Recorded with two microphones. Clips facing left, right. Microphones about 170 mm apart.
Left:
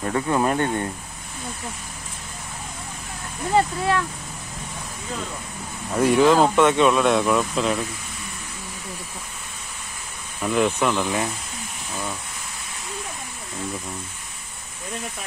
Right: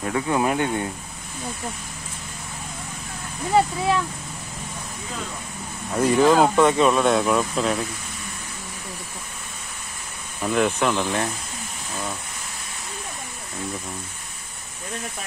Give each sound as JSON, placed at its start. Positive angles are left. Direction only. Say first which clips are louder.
{"t": 0.1, "sound": "speech", "louder": "even", "side_deg": -10}
{"t": 3.5, "sound": "speech", "louder": "right 1 dB", "side_deg": -5}
{"t": 5.9, "sound": "speech", "louder": "even", "side_deg": 0}
{"t": 10.4, "sound": "speech", "louder": "even", "side_deg": 0}